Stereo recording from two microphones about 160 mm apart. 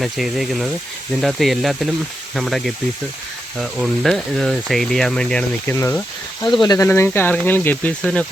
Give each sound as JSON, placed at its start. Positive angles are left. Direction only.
{"t": 0.0, "sound": "speech", "side_deg": 0}
{"t": 5.7, "sound": "speech", "side_deg": 15}